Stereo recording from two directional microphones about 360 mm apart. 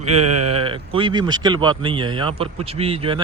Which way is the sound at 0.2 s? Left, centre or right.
Right.